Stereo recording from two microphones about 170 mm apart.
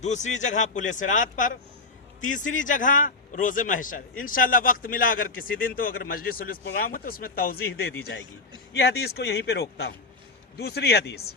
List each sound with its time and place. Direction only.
0.0 s a man's voice: 45° left (ahead or behind); by 11.3 s 70° left (ahead or behind)